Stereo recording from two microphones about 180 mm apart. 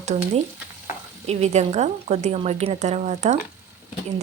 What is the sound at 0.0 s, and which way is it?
Frying, 40° right (ahead or behind).